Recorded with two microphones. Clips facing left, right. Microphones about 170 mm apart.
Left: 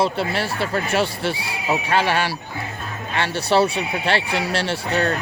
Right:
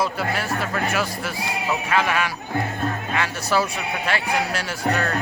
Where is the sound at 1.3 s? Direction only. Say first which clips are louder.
Left 2 dB; 70° left (ahead or behind).